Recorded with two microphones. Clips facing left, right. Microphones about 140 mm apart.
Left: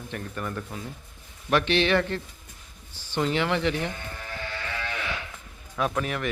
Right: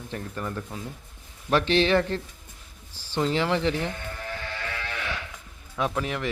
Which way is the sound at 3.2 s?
30° right (ahead or behind).